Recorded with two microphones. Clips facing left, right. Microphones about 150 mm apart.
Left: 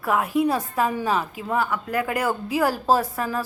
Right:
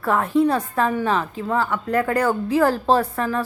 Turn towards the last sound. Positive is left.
turn(degrees=10)  # may be behind; listen again after turning